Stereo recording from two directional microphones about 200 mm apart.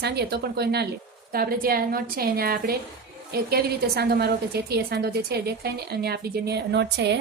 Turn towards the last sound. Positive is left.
turn(degrees=-60)  # may be behind; listen again after turning